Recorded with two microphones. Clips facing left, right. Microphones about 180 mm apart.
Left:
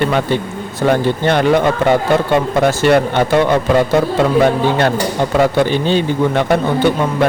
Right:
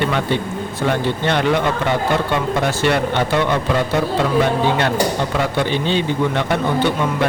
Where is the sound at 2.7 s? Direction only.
45° left (ahead or behind).